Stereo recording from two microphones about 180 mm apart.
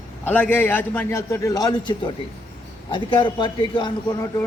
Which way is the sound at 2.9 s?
25° left (ahead or behind).